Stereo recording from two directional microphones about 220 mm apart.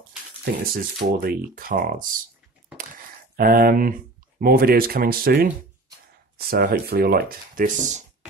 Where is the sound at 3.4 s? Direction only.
40° right (ahead or behind).